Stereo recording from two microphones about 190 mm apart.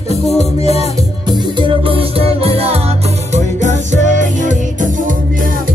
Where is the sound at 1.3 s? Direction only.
25° right (ahead or behind); by 4.6 s 40° right (ahead or behind).